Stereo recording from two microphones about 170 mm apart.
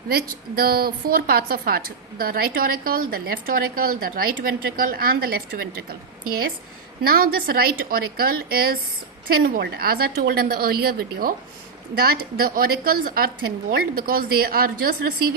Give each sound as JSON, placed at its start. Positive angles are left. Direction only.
{"t": 0.1, "sound": "a woman's voice", "side_deg": -65}
{"t": 7.0, "sound": "a woman's voice", "side_deg": -60}